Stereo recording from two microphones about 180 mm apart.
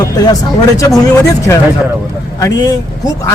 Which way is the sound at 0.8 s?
20° left (ahead or behind).